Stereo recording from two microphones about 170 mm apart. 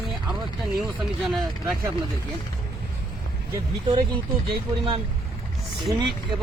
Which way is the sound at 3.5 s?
25° right (ahead or behind).